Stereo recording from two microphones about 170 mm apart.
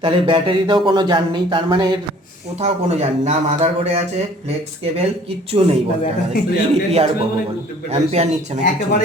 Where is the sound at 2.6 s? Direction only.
40° right (ahead or behind).